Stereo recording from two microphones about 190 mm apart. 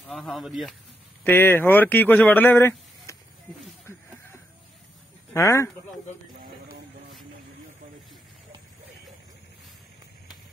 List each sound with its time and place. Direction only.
0.0 s speech: 5° left (ahead or behind)
1.2 s speech: 10° left (ahead or behind)
5.3 s speech: 15° left (ahead or behind)